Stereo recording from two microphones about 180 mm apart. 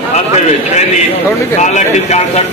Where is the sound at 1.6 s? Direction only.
40° left (ahead or behind).